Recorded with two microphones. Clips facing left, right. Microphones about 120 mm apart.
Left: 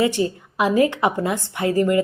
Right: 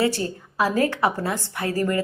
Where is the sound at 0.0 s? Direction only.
15° left (ahead or behind).